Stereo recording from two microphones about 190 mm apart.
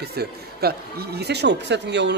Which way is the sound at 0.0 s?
55° right (ahead or behind).